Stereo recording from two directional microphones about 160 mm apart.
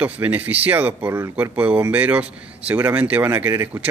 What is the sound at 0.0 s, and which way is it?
Speech, 10° right (ahead or behind).